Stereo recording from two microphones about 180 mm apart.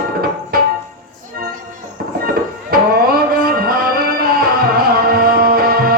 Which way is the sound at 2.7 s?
55° right (ahead or behind).